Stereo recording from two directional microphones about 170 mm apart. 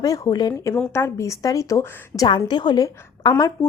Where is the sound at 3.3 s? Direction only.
15° left (ahead or behind).